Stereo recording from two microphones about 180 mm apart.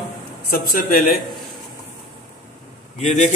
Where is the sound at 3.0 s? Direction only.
40° left (ahead or behind).